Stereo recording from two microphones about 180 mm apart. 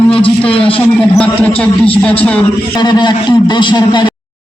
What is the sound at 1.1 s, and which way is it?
A man's voice, 5° left (ahead or behind).